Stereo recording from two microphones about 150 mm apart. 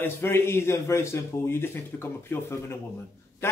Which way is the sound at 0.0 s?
15° left (ahead or behind).